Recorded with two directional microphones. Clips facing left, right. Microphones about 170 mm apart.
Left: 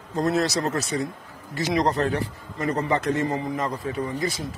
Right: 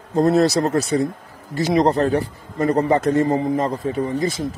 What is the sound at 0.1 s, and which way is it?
A man's voice, 30° right (ahead or behind).